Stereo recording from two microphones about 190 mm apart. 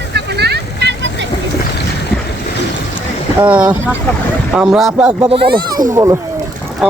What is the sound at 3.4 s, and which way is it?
Speech, 5° right (ahead or behind).